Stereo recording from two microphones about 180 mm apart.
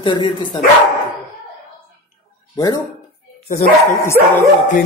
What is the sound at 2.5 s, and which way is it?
Speech, 20° left (ahead or behind).